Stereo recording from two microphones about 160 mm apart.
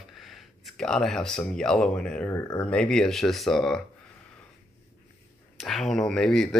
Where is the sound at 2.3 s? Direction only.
20° left (ahead or behind).